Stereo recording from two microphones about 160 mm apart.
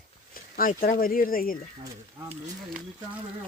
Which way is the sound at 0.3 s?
65° left (ahead or behind).